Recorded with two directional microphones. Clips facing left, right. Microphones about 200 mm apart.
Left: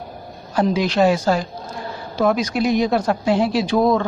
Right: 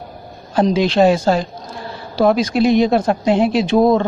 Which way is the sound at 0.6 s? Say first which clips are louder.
Right 4 dB; 25° right (ahead or behind).